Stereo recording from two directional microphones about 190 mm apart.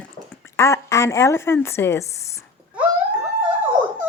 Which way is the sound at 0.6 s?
15° left (ahead or behind).